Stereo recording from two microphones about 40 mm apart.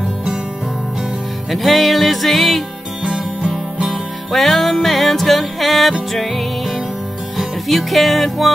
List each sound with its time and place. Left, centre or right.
1.5 s music: centre
3.0 s music: right
3.8 s music: centre